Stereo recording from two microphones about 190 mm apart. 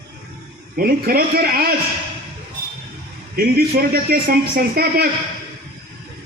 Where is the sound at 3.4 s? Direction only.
50° right (ahead or behind).